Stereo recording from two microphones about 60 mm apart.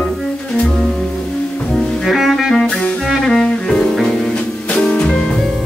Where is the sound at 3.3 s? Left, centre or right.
Centre.